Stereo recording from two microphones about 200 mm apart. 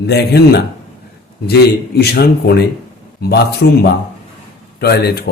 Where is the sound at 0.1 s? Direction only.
55° left (ahead or behind).